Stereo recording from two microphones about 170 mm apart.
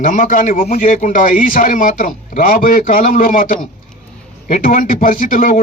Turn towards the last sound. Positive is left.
turn(degrees=50)  # may be behind; listen again after turning